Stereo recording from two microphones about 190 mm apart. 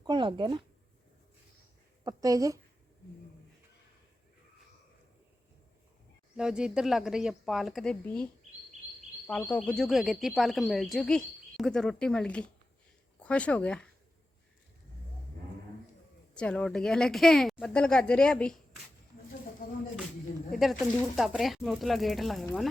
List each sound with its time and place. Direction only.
0.0 s speech: 25° right (ahead or behind)
2.0 s speech: 20° right (ahead or behind)
6.3 s speech: 5° right (ahead or behind)
16.3 s speech: 5° left (ahead or behind)
19.6 s a sound: 50° left (ahead or behind)
20.5 s speech: centre (ahead or behind)